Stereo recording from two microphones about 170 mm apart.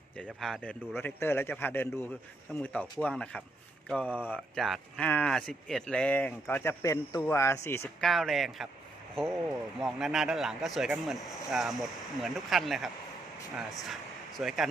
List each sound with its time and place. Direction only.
0.3 s speech: centre (ahead or behind)
8.0 s speech: centre (ahead or behind)
9.8 s speech: centre (ahead or behind)